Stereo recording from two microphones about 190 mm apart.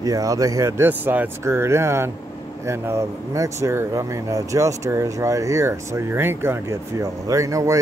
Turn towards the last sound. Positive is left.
turn(degrees=-15)  # may be behind; listen again after turning